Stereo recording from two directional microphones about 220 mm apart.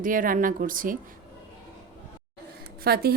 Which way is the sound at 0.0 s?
40° right (ahead or behind).